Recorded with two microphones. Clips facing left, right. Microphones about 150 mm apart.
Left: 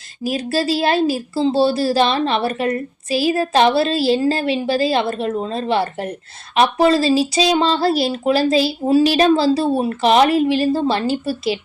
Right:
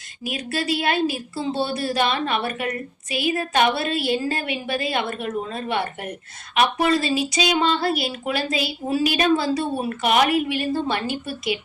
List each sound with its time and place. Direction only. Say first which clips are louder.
0.3 s a woman's voice: left 6 dB; 30° left (ahead or behind)